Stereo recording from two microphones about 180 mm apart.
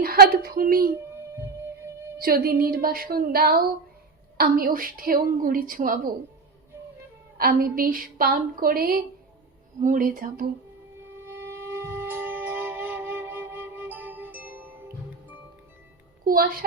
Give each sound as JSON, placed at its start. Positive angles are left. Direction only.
{"t": 0.0, "sound": "speech", "side_deg": -55}
{"t": 2.1, "sound": "a woman's voice", "side_deg": -55}
{"t": 7.3, "sound": "a woman's voice", "side_deg": -55}
{"t": 10.9, "sound": "music", "side_deg": -10}
{"t": 16.2, "sound": "a woman's voice", "side_deg": -55}